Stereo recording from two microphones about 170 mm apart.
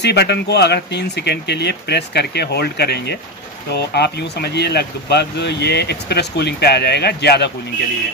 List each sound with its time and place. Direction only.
0.0 s speech: 80° left